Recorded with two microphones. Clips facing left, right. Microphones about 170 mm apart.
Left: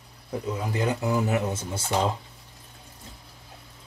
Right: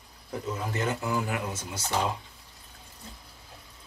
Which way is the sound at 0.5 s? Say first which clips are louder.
Left 3 dB; 15° left (ahead or behind).